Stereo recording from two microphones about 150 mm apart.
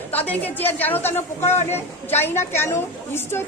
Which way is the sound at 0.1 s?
10° left (ahead or behind).